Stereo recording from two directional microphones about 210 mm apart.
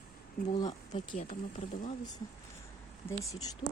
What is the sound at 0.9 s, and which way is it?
Speech, 35° left (ahead or behind).